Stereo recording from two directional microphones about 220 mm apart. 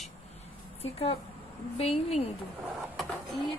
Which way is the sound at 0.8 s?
25° left (ahead or behind).